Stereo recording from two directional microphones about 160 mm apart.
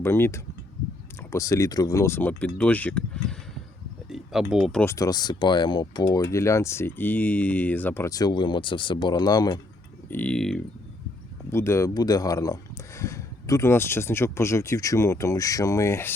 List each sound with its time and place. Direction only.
0.0 s speech: 15° left (ahead or behind)
4.1 s speech: 5° right (ahead or behind)
4.8 s speech: 20° left (ahead or behind)
10.1 s speech: 10° left (ahead or behind)
11.5 s speech: 15° left (ahead or behind)